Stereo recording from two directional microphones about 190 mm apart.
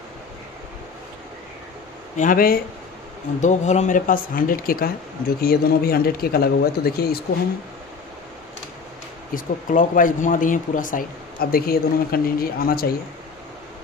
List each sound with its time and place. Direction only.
2.1 s speech: 45° left (ahead or behind)
3.3 s speech: 40° left (ahead or behind); by 7.2 s 55° left (ahead or behind)
9.3 s speech: 45° left (ahead or behind)